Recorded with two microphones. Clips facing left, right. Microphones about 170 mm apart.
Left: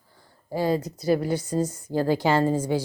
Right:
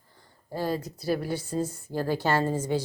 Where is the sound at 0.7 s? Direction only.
Centre (ahead or behind).